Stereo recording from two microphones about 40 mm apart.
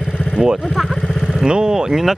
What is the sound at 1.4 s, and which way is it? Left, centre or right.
Speech, right.